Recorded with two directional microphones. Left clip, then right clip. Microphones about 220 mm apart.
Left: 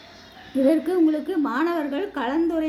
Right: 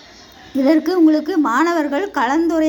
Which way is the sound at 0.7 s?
20° right (ahead or behind).